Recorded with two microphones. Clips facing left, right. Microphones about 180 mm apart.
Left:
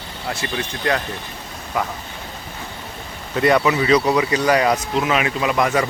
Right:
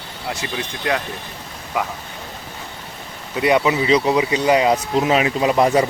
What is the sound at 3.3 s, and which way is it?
Speech, 10° right (ahead or behind).